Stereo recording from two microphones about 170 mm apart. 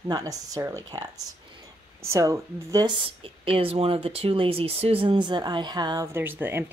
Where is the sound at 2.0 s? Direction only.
15° right (ahead or behind).